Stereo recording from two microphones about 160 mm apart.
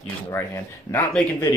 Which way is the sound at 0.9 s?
15° left (ahead or behind).